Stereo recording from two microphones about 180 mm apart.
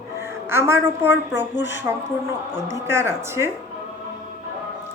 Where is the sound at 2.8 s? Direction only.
15° right (ahead or behind).